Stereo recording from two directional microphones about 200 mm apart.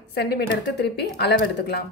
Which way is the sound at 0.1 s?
55° left (ahead or behind).